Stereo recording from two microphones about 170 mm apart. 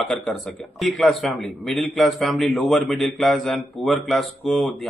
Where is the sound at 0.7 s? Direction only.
Centre (ahead or behind).